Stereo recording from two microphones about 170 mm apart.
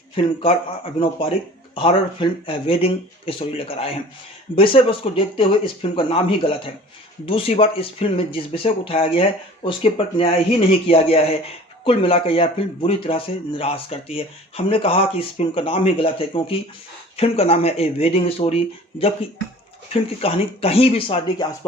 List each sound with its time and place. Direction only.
0.2 s speech: 30° left (ahead or behind)